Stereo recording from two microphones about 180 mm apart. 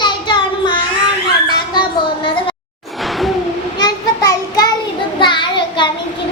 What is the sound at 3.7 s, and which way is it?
Child singing, 20° left (ahead or behind).